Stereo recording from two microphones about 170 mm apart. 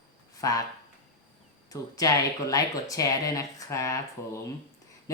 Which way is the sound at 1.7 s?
20° left (ahead or behind).